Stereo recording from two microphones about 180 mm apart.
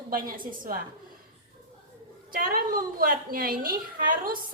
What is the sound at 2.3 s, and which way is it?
A woman's voice, 55° right (ahead or behind).